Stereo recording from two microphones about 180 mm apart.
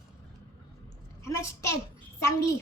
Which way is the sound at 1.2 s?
15° left (ahead or behind).